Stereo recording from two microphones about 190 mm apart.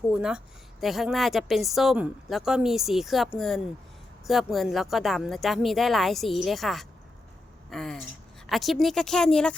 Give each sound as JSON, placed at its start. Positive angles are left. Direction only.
{"t": 0.1, "sound": "a woman's voice", "side_deg": -5}